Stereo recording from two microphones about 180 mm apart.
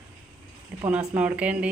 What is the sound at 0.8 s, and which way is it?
Speech, 10° right (ahead or behind).